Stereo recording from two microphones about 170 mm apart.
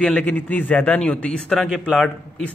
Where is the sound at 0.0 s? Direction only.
5° left (ahead or behind).